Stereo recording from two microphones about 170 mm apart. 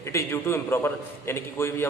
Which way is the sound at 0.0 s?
15° left (ahead or behind).